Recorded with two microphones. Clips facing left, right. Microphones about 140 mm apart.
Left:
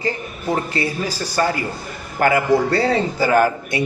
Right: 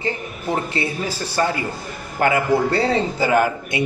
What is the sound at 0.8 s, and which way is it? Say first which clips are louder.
A man's voice: left 1 dB; 25° right (ahead or behind).